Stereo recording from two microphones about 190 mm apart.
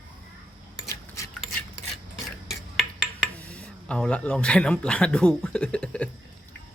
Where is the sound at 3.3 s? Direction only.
5° left (ahead or behind).